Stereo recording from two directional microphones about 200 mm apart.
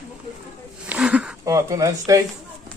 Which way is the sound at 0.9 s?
5° right (ahead or behind).